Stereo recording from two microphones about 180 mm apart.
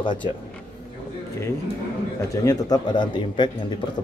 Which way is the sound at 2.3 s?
20° left (ahead or behind).